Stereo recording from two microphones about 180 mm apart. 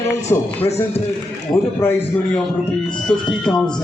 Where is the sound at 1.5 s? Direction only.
15° left (ahead or behind).